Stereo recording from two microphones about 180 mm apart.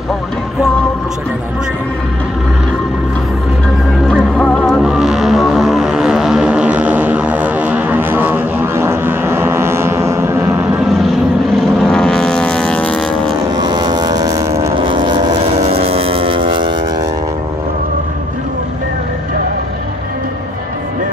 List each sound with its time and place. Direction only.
4.1 s music: 5° left (ahead or behind); by 10.7 s 15° right (ahead or behind)
11.5 s vehicle: centre (ahead or behind)
13.6 s vehicle: 25° right (ahead or behind)